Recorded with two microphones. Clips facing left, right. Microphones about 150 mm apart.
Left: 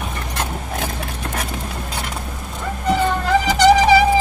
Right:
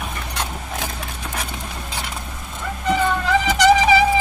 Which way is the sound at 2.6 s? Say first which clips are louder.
Left 1 dB; 35° left (ahead or behind).